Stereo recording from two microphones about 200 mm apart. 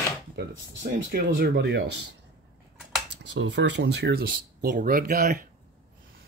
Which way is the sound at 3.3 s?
60° right (ahead or behind).